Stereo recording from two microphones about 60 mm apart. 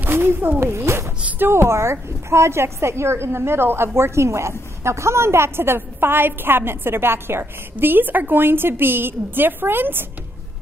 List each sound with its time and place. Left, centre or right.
0.0 s speech: right
0.6 s a woman's voice: right